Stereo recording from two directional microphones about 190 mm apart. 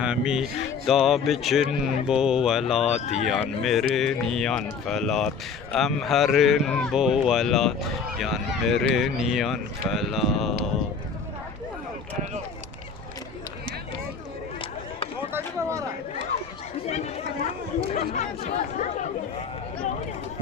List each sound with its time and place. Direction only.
0.0 s speech: 5° right (ahead or behind)
15.3 s a sound: 10° right (ahead or behind)
17.9 s chatter: 35° left (ahead or behind)